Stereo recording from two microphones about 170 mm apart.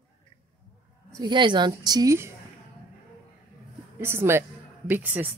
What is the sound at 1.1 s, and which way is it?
A woman's voice, 25° right (ahead or behind).